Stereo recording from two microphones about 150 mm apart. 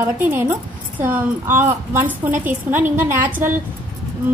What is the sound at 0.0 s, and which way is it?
A woman's voice, 15° right (ahead or behind).